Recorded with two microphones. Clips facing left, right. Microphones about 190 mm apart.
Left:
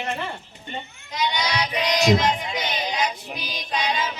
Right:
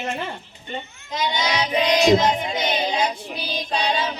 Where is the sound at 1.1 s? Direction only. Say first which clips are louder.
Right 2 dB; 25° right (ahead or behind).